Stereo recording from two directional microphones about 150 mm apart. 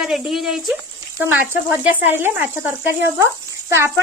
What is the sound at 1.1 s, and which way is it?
Speech, 15° right (ahead or behind).